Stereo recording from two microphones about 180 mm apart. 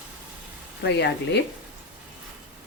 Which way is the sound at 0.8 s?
70° left (ahead or behind).